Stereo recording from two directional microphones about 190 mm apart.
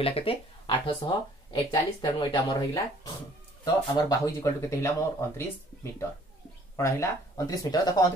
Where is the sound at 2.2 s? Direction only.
20° left (ahead or behind).